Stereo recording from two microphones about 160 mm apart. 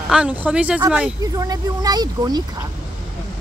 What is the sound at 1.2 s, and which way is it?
Speech, 25° right (ahead or behind).